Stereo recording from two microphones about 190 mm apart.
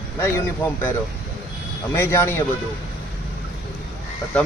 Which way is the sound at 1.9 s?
15° left (ahead or behind).